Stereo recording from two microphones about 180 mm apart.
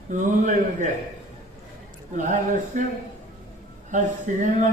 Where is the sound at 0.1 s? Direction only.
45° right (ahead or behind).